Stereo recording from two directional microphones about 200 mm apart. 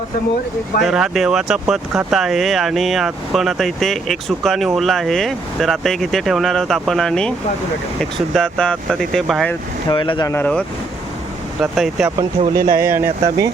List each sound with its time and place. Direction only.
0.8 s speech: 5° right (ahead or behind)
9.9 s speech: 25° left (ahead or behind)
11.6 s speech: centre (ahead or behind)
12.5 s speech: 45° right (ahead or behind)
12.8 s speech: 10° right (ahead or behind)